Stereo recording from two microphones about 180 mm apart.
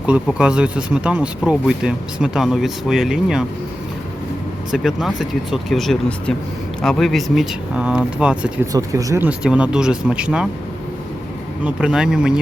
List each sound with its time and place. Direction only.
0.0 s speech: 5° right (ahead or behind)
4.7 s speech: centre (ahead or behind)
8.7 s speech: 20° right (ahead or behind)
9.4 s speech: 5° right (ahead or behind)
11.6 s speech: 5° right (ahead or behind)